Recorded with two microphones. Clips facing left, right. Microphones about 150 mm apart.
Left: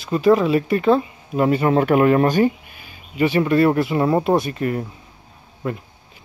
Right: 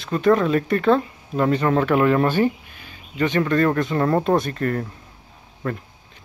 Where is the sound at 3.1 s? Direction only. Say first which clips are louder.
Left 3 dB; 10° left (ahead or behind).